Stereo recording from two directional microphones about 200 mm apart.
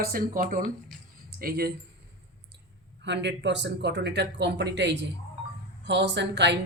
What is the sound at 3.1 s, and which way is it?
A woman's voice, 60° right (ahead or behind).